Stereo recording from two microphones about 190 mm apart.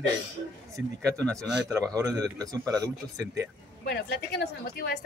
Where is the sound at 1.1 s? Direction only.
5° left (ahead or behind).